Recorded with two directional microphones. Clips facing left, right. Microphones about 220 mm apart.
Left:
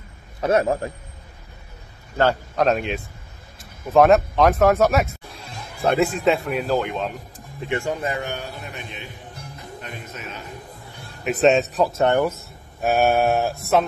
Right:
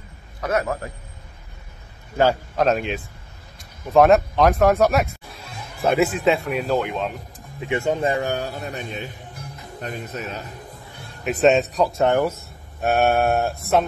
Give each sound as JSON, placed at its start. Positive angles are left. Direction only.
{"t": 0.4, "sound": "a man's voice", "side_deg": 30}
{"t": 2.1, "sound": "speech", "side_deg": -5}
{"t": 7.7, "sound": "a man's voice", "side_deg": -20}
{"t": 11.0, "sound": "a man's voice", "side_deg": 0}